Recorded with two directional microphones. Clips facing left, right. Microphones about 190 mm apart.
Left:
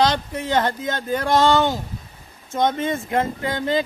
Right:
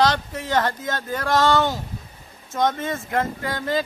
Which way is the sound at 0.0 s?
20° left (ahead or behind).